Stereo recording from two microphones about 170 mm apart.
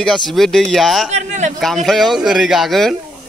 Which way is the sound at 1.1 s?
45° right (ahead or behind).